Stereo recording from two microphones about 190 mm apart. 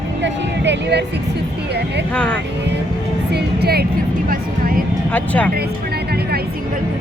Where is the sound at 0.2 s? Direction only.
65° right (ahead or behind).